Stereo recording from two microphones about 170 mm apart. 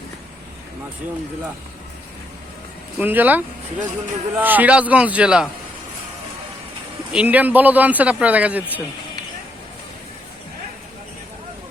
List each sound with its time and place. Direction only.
3.0 s a man's voice: 10° right (ahead or behind)
7.1 s a man's voice: 10° right (ahead or behind)